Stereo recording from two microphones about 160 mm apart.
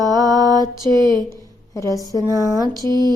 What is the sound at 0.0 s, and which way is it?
Mantra, 25° right (ahead or behind).